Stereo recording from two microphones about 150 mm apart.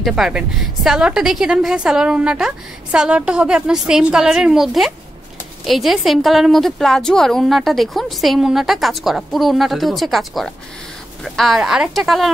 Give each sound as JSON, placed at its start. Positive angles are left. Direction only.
{"t": 0.0, "sound": "a woman's voice", "side_deg": -5}